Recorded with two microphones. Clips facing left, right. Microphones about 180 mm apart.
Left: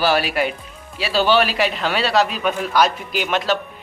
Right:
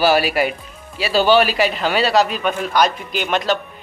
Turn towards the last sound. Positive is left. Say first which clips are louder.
# right 1 dB
turn(degrees=5)  # may be behind; listen again after turning